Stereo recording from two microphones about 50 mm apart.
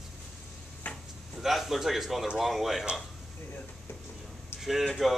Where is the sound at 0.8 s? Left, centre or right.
Left.